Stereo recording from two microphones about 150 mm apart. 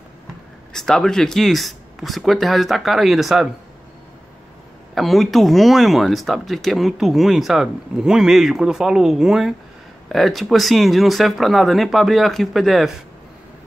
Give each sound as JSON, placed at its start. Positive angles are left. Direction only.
{"t": 0.7, "sound": "speech", "side_deg": 5}
{"t": 4.9, "sound": "speech", "side_deg": 0}